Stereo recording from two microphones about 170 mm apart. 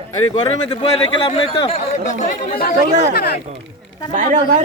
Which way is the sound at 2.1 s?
60° left (ahead or behind).